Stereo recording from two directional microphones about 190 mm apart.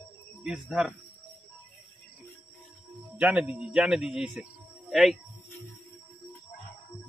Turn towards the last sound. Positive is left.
turn(degrees=0)  # may be behind; listen again after turning